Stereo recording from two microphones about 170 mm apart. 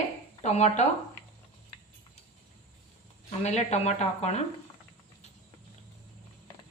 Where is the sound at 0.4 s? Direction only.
40° left (ahead or behind).